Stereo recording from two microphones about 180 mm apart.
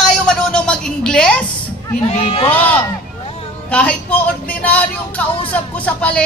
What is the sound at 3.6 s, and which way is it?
Speech, 5° left (ahead or behind).